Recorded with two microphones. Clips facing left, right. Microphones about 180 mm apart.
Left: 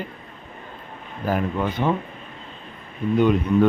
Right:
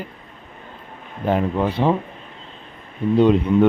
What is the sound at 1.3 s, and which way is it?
Speech, 30° right (ahead or behind).